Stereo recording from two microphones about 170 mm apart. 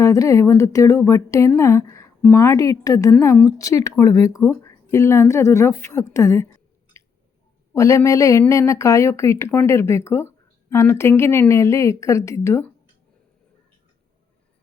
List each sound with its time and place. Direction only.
0.0 s speech: 20° left (ahead or behind)
7.7 s speech: 20° left (ahead or behind)